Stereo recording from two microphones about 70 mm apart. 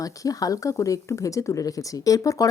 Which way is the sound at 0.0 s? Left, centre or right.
Left.